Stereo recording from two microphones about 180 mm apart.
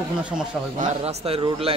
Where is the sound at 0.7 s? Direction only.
40° right (ahead or behind).